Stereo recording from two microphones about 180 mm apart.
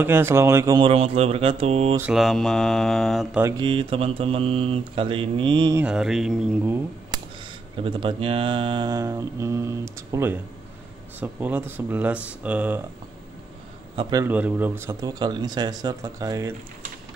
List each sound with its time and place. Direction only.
0.0 s speech: 10° right (ahead or behind)
0.7 s mantra: 30° right (ahead or behind)
2.0 s speech: 5° right (ahead or behind)
3.5 s mantra: 30° right (ahead or behind)
5.8 s speech: 5° right (ahead or behind)
7.8 s speech: 30° right (ahead or behind); by 12.8 s 10° right (ahead or behind)
14.2 s speech: 10° right (ahead or behind)